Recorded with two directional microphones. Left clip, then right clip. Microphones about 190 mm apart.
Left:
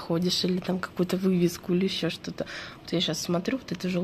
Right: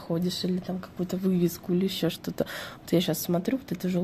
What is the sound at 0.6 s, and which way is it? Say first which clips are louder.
Speech: left 6 dB; 10° left (ahead or behind).